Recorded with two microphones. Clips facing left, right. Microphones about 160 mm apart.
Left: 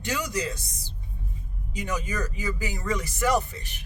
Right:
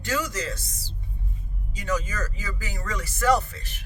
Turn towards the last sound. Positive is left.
turn(degrees=15)  # may be behind; listen again after turning